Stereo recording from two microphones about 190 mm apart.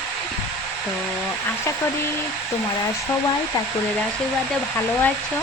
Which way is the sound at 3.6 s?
20° left (ahead or behind).